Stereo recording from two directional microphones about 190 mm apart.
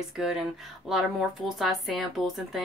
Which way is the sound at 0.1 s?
Centre (ahead or behind).